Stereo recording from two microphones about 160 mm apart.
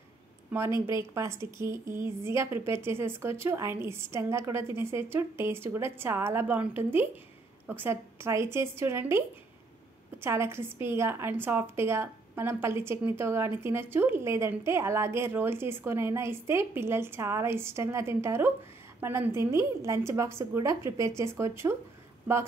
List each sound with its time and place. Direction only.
0.5 s a woman's voice: 15° right (ahead or behind)
10.2 s a woman's voice: 15° right (ahead or behind)